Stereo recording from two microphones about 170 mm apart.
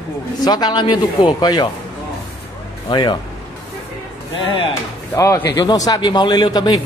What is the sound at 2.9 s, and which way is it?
Speech, 25° left (ahead or behind).